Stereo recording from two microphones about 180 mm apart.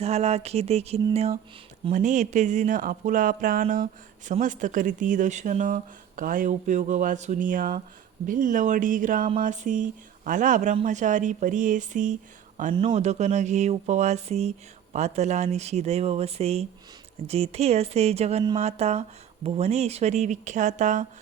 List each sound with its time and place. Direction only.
0.0 s speech: 35° right (ahead or behind)